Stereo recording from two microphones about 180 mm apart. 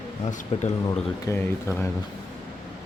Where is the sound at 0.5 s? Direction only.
35° left (ahead or behind).